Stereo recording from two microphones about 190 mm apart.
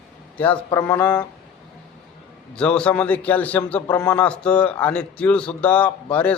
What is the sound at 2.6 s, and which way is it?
A man's voice, 5° left (ahead or behind).